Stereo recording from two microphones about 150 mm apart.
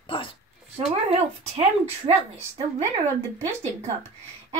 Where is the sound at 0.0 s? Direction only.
35° left (ahead or behind).